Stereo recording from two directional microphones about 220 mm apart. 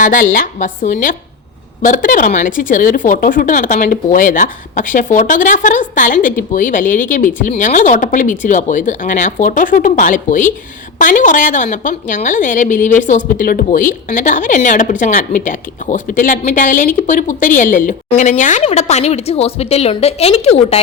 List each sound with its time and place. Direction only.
0.0 s a woman's voice: 35° left (ahead or behind)